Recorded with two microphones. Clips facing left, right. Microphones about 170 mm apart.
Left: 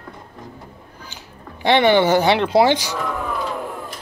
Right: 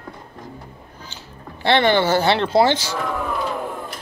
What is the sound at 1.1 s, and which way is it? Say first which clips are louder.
Speech: right 1 dB; 15° left (ahead or behind).